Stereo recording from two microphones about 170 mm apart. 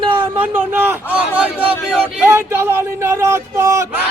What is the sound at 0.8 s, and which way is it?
Speech, 10° right (ahead or behind).